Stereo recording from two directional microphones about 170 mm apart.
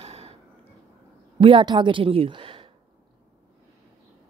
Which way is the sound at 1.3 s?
30° right (ahead or behind).